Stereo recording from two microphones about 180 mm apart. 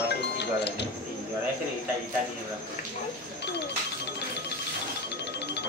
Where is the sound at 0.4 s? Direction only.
70° left (ahead or behind).